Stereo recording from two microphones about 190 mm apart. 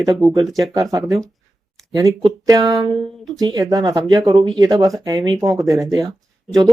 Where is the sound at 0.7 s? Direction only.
20° right (ahead or behind).